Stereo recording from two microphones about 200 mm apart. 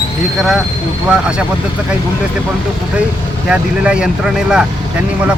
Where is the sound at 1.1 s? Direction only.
5° right (ahead or behind).